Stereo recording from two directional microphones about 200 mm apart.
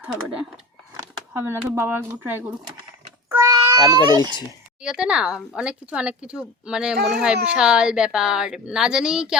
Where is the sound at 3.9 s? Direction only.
20° right (ahead or behind).